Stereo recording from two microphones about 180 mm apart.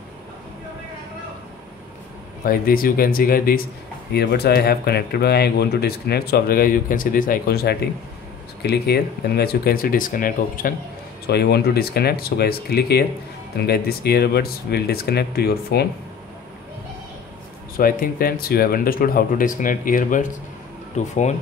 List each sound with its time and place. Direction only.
2.4 s speech: 55° left (ahead or behind)
4.1 s speech: 65° left (ahead or behind)
11.2 s speech: 65° left (ahead or behind)
17.7 s speech: 50° left (ahead or behind)